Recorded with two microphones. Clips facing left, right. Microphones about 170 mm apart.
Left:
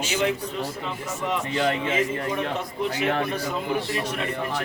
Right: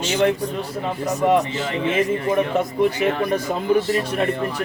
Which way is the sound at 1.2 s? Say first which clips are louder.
Right 11 dB; 55° right (ahead or behind).